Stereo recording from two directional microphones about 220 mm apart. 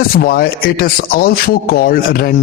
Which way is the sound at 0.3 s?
40° left (ahead or behind).